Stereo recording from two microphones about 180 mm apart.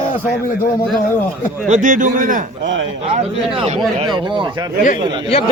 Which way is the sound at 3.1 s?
30° right (ahead or behind).